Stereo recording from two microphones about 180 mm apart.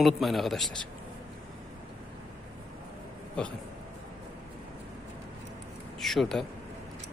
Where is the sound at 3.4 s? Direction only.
5° left (ahead or behind).